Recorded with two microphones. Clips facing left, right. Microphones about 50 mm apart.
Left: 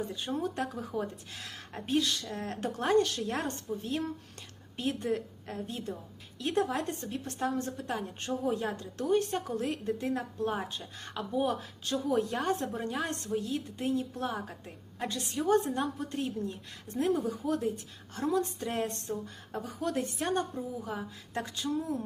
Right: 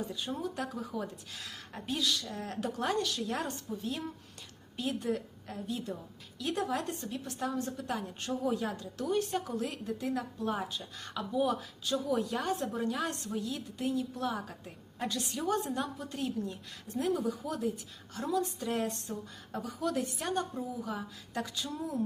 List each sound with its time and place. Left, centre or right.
0.1 s speech: left